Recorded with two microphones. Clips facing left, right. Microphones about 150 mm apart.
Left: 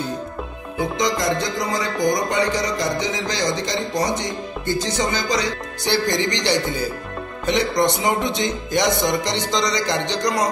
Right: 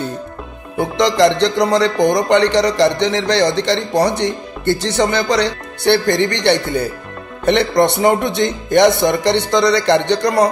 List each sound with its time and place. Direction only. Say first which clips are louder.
0.7 s speech: right 8 dB; 70° right (ahead or behind)
7.4 s music: right 6 dB; 65° right (ahead or behind)